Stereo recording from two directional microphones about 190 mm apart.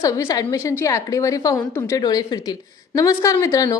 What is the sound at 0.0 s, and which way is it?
A woman's voice, 15° left (ahead or behind).